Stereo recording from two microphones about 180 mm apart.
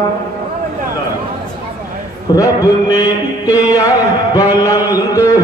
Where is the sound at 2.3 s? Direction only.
20° left (ahead or behind).